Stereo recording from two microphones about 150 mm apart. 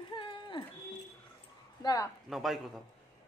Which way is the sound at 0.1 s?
35° left (ahead or behind).